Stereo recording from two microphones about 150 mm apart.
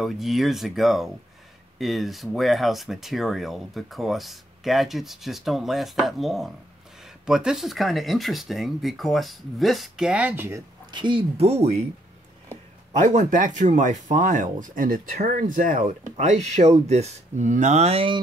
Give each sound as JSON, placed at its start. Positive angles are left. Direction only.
{"t": 0.0, "sound": "speech", "side_deg": 0}
{"t": 10.9, "sound": "speech", "side_deg": -30}
{"t": 13.0, "sound": "speech", "side_deg": -55}